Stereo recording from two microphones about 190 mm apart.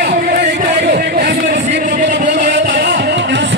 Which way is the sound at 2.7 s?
65° right (ahead or behind).